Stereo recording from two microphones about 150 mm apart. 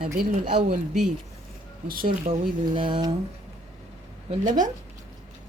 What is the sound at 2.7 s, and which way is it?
Speech, 30° right (ahead or behind).